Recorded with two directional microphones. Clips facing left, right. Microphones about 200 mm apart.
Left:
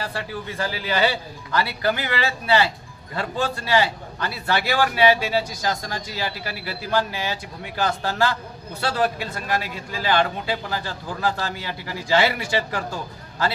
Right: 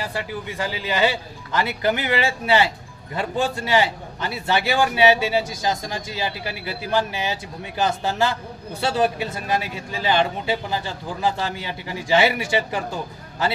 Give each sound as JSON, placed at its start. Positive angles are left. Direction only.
{"t": 0.0, "sound": "a man's voice", "side_deg": -15}